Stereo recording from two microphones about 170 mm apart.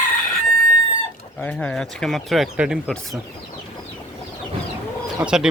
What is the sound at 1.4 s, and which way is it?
Speech, 5° left (ahead or behind).